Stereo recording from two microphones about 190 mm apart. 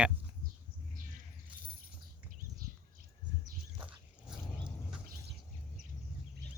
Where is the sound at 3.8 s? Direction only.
5° right (ahead or behind).